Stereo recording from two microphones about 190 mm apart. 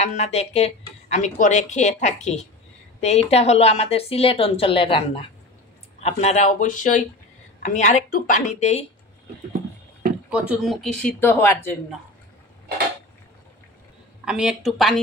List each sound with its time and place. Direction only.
0.0 s a woman's voice: 35° left (ahead or behind)
10.3 s speech: 5° right (ahead or behind); by 11.7 s 10° left (ahead or behind)
14.2 s speech: 5° right (ahead or behind)